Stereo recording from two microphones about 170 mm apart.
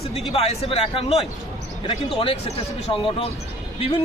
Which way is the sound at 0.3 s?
35° left (ahead or behind).